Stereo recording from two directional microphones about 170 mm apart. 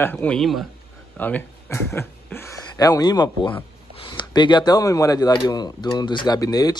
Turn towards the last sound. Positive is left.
turn(degrees=20)  # may be behind; listen again after turning